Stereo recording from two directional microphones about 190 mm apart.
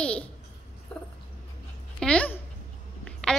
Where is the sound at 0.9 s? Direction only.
5° left (ahead or behind).